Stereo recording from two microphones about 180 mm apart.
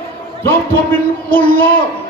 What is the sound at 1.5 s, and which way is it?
Speech, 55° left (ahead or behind).